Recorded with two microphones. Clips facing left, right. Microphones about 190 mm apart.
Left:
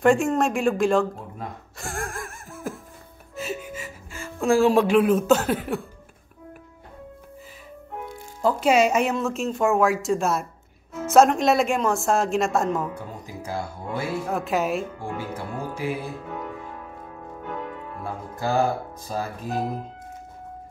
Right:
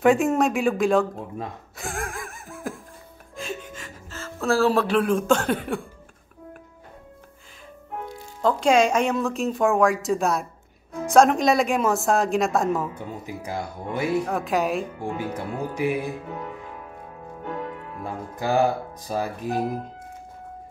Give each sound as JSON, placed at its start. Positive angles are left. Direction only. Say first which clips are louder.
{"t": 0.0, "sound": "speech", "louder": "right 1 dB", "side_deg": 0}
{"t": 1.8, "sound": "laughter", "louder": "even", "side_deg": 0}
{"t": 3.3, "sound": "music", "louder": "left 2 dB", "side_deg": 5}
{"t": 8.4, "sound": "speech", "louder": "even", "side_deg": 5}
{"t": 12.9, "sound": "speech", "louder": "right 2 dB", "side_deg": -20}
{"t": 14.2, "sound": "speech", "louder": "right 1 dB", "side_deg": 0}
{"t": 15.0, "sound": "speech", "louder": "right 2 dB", "side_deg": -15}
{"t": 18.0, "sound": "speech", "louder": "right 1 dB", "side_deg": -15}